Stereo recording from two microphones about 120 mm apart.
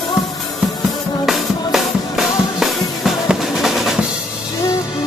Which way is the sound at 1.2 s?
Centre (ahead or behind).